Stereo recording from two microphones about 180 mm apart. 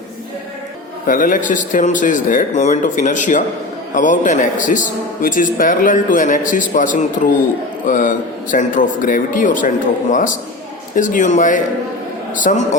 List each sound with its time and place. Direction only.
1.0 s a man's voice: 50° left (ahead or behind)